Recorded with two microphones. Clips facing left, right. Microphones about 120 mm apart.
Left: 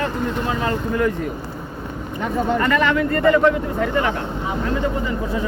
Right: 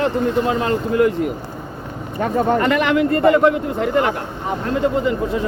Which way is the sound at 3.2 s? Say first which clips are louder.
Right 1 dB; 55° right (ahead or behind).